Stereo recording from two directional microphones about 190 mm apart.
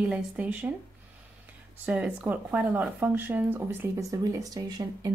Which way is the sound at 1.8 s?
5° right (ahead or behind).